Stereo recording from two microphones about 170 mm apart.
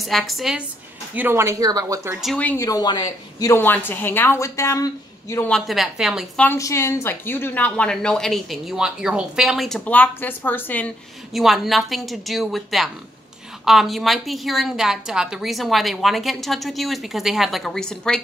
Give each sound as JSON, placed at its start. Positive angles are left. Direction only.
{"t": 0.0, "sound": "a woman's voice", "side_deg": 0}
{"t": 1.1, "sound": "speech", "side_deg": -15}
{"t": 2.2, "sound": "a woman's voice", "side_deg": 10}
{"t": 2.6, "sound": "a woman's voice", "side_deg": 20}
{"t": 5.5, "sound": "a woman's voice", "side_deg": 0}
{"t": 6.4, "sound": "a woman's voice", "side_deg": 15}
{"t": 11.3, "sound": "a woman's voice", "side_deg": 0}